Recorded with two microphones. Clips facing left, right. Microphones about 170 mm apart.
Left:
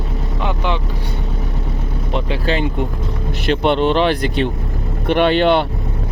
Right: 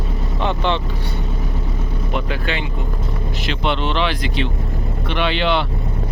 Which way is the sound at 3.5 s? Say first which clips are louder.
Left 7 dB; 50° left (ahead or behind).